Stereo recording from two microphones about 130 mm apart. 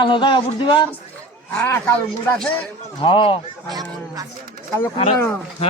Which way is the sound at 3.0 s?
40° left (ahead or behind).